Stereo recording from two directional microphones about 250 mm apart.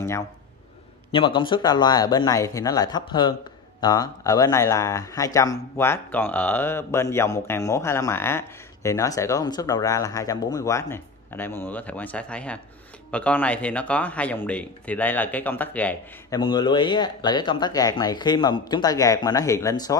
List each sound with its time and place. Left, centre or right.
1.1 s speech: centre
16.3 s speech: centre